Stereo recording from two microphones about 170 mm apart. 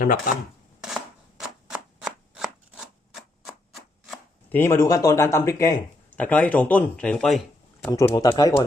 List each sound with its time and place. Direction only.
1.4 s a sound: 5° right (ahead or behind)
4.4 s speech: 10° left (ahead or behind)
7.9 s speech: 20° left (ahead or behind)